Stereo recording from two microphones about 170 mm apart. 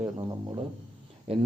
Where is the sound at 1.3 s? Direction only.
35° right (ahead or behind).